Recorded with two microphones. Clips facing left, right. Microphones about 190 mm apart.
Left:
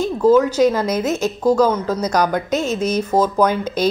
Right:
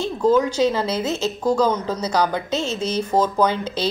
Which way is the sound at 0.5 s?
10° left (ahead or behind).